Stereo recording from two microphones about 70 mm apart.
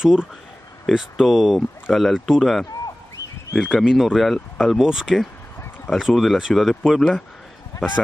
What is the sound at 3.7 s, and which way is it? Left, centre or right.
Speech, centre.